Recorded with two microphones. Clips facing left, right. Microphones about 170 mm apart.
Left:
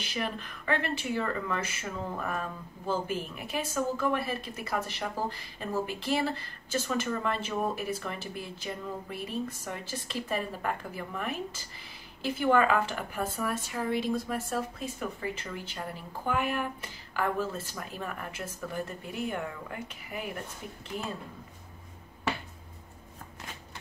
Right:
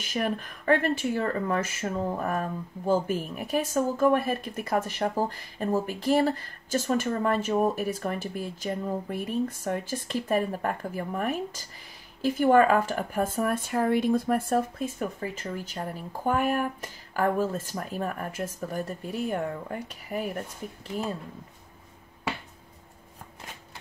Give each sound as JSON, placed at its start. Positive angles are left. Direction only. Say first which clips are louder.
{"t": 0.0, "sound": "speech", "louder": "right 5 dB", "side_deg": -45}